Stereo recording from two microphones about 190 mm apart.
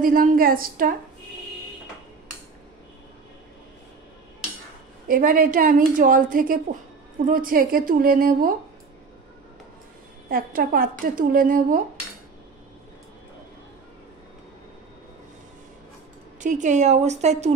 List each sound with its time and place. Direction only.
0.0 s a woman's voice: 45° right (ahead or behind)
5.0 s a woman's voice: 45° right (ahead or behind)
10.3 s a woman's voice: 50° right (ahead or behind)
16.3 s a woman's voice: 40° right (ahead or behind)